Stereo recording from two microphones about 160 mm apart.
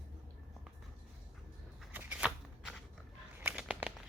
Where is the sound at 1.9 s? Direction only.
10° right (ahead or behind).